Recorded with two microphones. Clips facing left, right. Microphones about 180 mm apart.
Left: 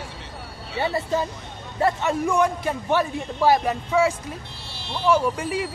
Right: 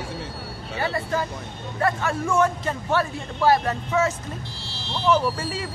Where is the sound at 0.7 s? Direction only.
25° left (ahead or behind).